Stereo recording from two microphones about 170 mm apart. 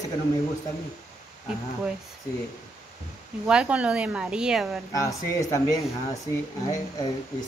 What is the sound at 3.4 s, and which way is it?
A woman's voice, 5° right (ahead or behind).